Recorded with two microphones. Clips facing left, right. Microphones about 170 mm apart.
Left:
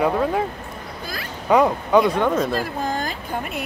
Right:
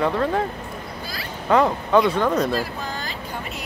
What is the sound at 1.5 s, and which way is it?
Speech, 10° left (ahead or behind).